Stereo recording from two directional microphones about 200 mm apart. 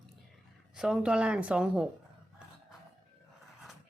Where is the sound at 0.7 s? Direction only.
5° right (ahead or behind).